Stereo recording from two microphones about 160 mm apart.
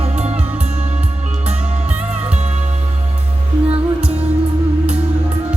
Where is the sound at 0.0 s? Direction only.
40° right (ahead or behind).